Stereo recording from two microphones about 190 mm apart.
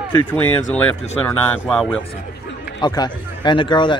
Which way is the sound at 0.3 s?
10° left (ahead or behind).